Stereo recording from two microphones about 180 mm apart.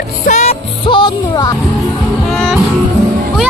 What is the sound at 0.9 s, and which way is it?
Music, 25° left (ahead or behind).